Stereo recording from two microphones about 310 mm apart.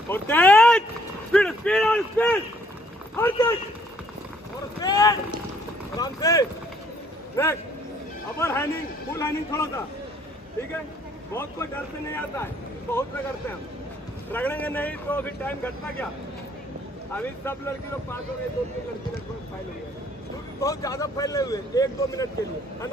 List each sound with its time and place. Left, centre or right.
0.1 s a man's voice: centre
4.8 s boat: centre
5.9 s a man's voice: centre
8.4 s a man's voice: centre
11.3 s a man's voice: centre
14.3 s speech: centre
17.1 s a man's voice: centre
20.6 s a man's voice: centre